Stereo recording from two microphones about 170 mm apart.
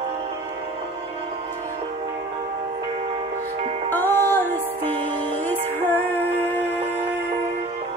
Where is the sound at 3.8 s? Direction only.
10° left (ahead or behind).